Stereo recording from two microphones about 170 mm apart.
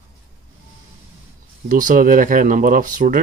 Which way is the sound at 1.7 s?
50° right (ahead or behind).